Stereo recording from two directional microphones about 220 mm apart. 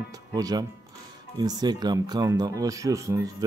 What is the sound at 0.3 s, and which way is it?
Speech, 15° right (ahead or behind).